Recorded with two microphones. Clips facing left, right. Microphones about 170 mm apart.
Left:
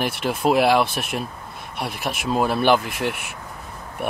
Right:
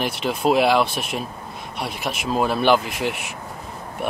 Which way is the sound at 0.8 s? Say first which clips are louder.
Even; 55° left (ahead or behind).